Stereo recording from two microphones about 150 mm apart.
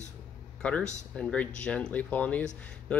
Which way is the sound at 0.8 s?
50° left (ahead or behind).